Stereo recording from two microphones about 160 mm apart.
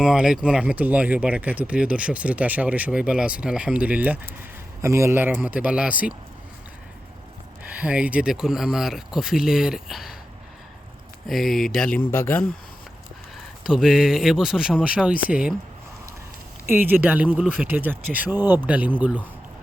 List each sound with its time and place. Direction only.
0.0 s speech: 5° right (ahead or behind)
7.6 s speech: 10° right (ahead or behind)
11.3 s speech: centre (ahead or behind)
11.9 s speech: 15° left (ahead or behind)
13.7 s speech: centre (ahead or behind)
16.6 s speech: 15° right (ahead or behind)